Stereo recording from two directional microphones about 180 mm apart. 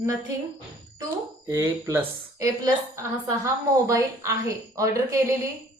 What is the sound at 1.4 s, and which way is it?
A woman's voice, 15° right (ahead or behind).